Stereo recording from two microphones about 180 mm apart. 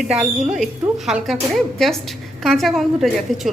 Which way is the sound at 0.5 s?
Centre (ahead or behind).